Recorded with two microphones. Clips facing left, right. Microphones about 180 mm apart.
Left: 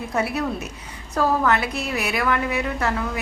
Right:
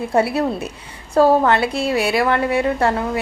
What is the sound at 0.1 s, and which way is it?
A woman's voice, 30° right (ahead or behind).